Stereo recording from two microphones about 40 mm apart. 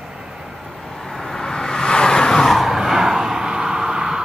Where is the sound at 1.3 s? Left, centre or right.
Centre.